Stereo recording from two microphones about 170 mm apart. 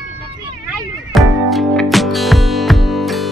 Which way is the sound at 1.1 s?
Centre (ahead or behind).